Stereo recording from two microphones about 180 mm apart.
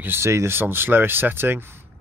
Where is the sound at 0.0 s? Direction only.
15° right (ahead or behind).